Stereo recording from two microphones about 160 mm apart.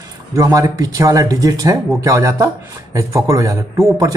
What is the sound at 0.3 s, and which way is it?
Speech, 20° right (ahead or behind).